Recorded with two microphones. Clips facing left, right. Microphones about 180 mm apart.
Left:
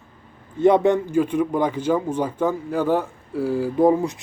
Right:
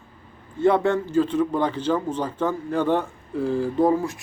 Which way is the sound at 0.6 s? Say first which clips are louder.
Left 3 dB; 20° left (ahead or behind).